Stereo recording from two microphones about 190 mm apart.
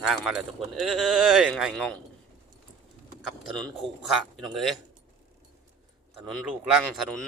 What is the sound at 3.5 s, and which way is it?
Speech, 25° right (ahead or behind).